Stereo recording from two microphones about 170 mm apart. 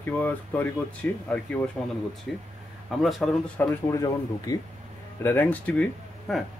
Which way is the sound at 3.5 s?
20° left (ahead or behind).